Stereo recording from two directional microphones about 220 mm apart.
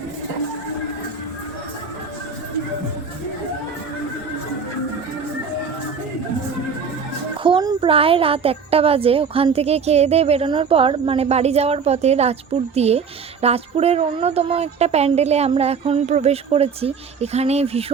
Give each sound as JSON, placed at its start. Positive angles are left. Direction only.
{"t": 7.4, "sound": "a child's voice", "side_deg": -20}